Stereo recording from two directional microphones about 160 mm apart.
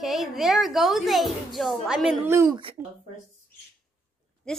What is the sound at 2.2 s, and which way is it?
Speech, 15° right (ahead or behind).